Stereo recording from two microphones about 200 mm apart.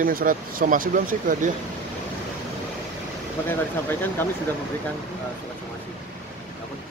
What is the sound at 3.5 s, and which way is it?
Speech, 10° left (ahead or behind).